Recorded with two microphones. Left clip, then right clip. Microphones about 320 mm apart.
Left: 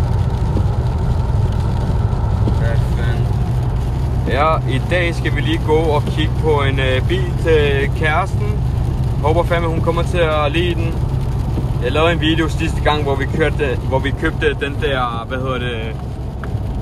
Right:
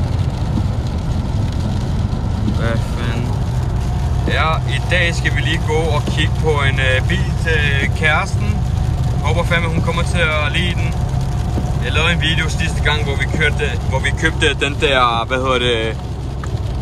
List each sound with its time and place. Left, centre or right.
4.3 s speech: centre
9.3 s speech: centre
11.8 s speech: centre
14.2 s speech: centre